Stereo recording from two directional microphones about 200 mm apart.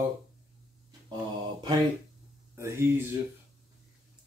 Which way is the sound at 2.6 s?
15° right (ahead or behind).